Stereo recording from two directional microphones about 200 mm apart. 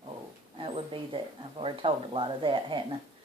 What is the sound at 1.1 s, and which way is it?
Speech, 25° right (ahead or behind).